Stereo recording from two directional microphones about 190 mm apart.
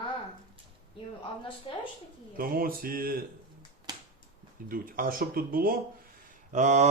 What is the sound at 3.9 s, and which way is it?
Finger snapping, 20° right (ahead or behind).